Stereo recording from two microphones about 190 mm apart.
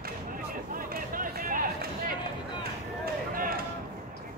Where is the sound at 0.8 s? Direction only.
45° right (ahead or behind).